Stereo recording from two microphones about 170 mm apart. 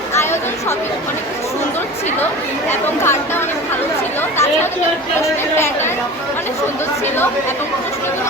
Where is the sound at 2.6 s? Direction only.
15° left (ahead or behind).